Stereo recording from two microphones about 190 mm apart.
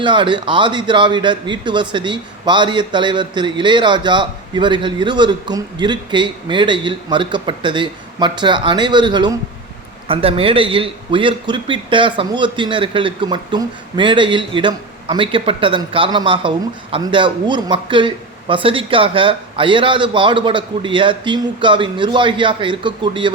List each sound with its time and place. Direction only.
0.0 s a man's voice: 25° right (ahead or behind)